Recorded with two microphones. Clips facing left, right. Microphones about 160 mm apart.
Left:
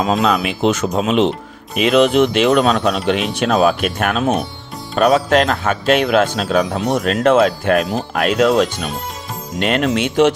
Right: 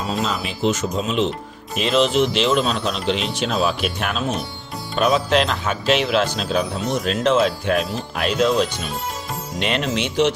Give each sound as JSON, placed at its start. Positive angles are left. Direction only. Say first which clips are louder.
{"t": 0.0, "sound": "speech", "louder": "left 8 dB", "side_deg": 80}
{"t": 1.7, "sound": "a man's voice", "louder": "left 5 dB", "side_deg": 60}
{"t": 9.6, "sound": "a man's voice", "louder": "left 6 dB", "side_deg": 50}